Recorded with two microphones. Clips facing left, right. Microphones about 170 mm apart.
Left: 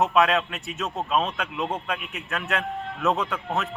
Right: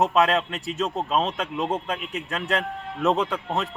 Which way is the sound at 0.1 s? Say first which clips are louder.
Even; 35° right (ahead or behind).